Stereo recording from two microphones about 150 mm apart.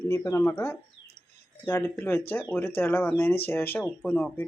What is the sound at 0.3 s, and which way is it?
Speech, 20° left (ahead or behind).